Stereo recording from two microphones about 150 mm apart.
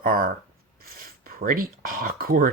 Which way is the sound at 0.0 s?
75° right (ahead or behind).